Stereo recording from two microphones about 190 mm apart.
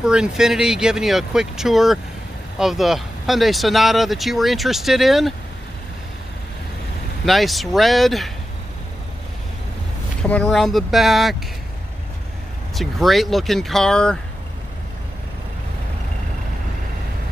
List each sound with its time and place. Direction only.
0.0 s speech: 5° right (ahead or behind)
7.2 s speech: centre (ahead or behind)
10.2 s speech: 5° left (ahead or behind)
12.7 s speech: centre (ahead or behind)